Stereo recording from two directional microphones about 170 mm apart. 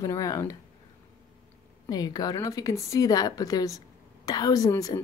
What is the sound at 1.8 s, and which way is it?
Speech, 20° left (ahead or behind).